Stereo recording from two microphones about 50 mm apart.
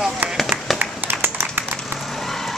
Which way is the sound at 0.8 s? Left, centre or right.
Right.